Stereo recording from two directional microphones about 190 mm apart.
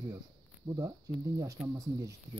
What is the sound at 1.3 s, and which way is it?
Speech, 20° right (ahead or behind).